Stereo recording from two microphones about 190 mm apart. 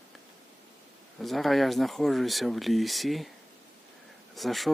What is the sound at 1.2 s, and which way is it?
Speech, centre (ahead or behind).